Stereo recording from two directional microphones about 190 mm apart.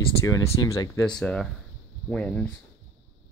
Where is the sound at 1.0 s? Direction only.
5° left (ahead or behind).